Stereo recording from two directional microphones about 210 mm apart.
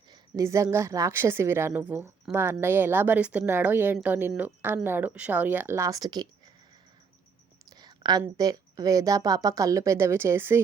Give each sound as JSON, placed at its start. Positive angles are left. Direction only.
{"t": 0.1, "sound": "a woman's voice", "side_deg": -15}
{"t": 7.8, "sound": "whispering", "side_deg": -20}
{"t": 8.2, "sound": "a woman's voice", "side_deg": -15}